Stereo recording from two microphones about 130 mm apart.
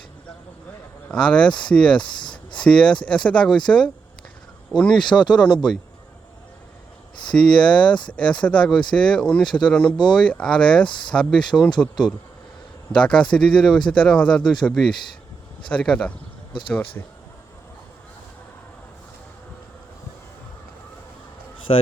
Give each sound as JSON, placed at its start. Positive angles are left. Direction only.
{"t": 1.0, "sound": "speech", "side_deg": 10}
{"t": 2.2, "sound": "a sound", "side_deg": 35}
{"t": 2.6, "sound": "speech", "side_deg": 10}
{"t": 7.3, "sound": "speech", "side_deg": 5}
{"t": 12.9, "sound": "speech", "side_deg": 5}
{"t": 16.5, "sound": "speech", "side_deg": 40}
{"t": 21.7, "sound": "speech", "side_deg": 45}